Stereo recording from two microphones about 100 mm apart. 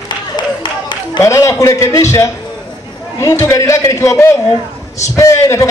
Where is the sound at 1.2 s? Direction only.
30° left (ahead or behind).